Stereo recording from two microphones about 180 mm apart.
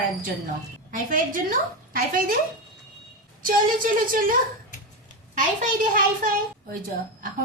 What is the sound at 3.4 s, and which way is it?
Speech, 50° right (ahead or behind).